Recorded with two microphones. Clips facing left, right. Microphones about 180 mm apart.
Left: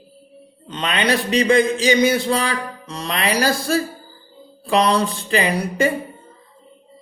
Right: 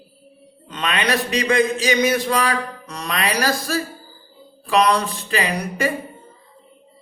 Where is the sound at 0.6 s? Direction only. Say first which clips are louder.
Left 2 dB; 30° left (ahead or behind).